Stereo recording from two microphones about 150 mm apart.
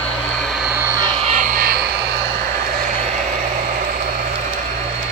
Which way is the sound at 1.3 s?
60° right (ahead or behind).